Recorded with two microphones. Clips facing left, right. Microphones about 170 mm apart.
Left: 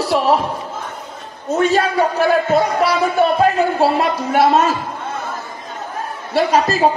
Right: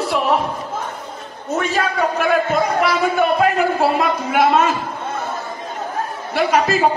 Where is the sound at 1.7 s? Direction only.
35° left (ahead or behind).